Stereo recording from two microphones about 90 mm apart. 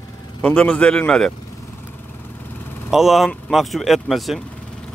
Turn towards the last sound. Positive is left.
turn(degrees=0)  # may be behind; listen again after turning